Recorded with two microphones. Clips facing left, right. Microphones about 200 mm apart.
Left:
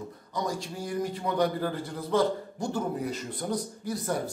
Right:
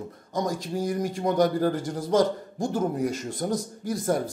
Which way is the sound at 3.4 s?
45° right (ahead or behind).